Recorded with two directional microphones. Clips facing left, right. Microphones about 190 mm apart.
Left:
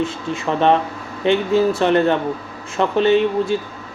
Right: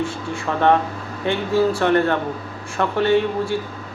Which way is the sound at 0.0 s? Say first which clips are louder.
Left 2 dB; 20° left (ahead or behind).